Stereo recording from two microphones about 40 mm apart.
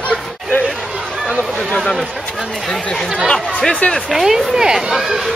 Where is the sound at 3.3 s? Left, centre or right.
Centre.